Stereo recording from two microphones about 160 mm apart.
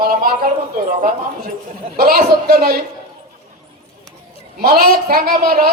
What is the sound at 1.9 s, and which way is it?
Speech, 65° right (ahead or behind).